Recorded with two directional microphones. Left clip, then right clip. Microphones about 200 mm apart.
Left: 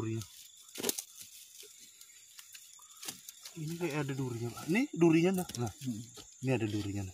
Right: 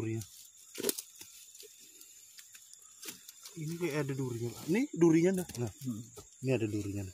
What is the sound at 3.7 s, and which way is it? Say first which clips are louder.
Speech: right 1 dB; 10° left (ahead or behind).